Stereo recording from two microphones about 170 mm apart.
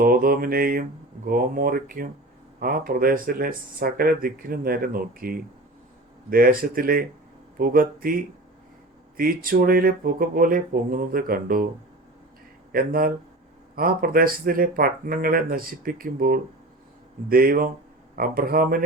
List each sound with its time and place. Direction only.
0.0 s speech: 60° right (ahead or behind)
12.7 s speech: 60° right (ahead or behind)